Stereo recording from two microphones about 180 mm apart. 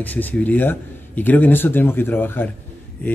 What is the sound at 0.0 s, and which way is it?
Speech, 10° left (ahead or behind).